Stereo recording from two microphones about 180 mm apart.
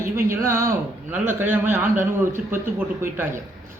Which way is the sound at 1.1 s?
10° right (ahead or behind).